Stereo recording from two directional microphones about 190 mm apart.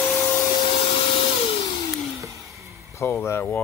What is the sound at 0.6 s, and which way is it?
Vacuum cleaner, 30° left (ahead or behind).